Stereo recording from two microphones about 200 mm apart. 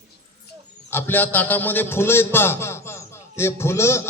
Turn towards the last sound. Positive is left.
turn(degrees=15)  # may be behind; listen again after turning